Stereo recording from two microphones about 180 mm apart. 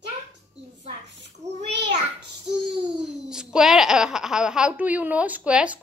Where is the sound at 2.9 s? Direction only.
5° right (ahead or behind).